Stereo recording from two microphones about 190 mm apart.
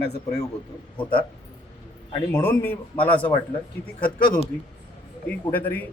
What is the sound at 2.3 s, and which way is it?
A man's voice, 10° left (ahead or behind).